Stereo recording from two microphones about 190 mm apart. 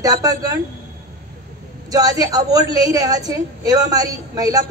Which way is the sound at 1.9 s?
20° right (ahead or behind).